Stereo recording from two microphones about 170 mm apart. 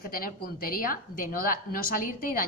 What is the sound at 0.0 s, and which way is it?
A woman's voice, 60° left (ahead or behind).